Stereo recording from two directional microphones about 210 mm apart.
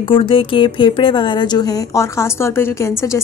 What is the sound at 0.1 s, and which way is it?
A woman's voice, 25° left (ahead or behind).